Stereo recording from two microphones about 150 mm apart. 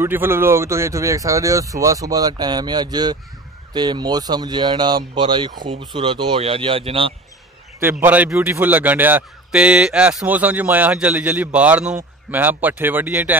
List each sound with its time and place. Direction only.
0.0 s speech: 15° right (ahead or behind); by 7.2 s 40° right (ahead or behind)
8.0 s a man's voice: 10° right (ahead or behind)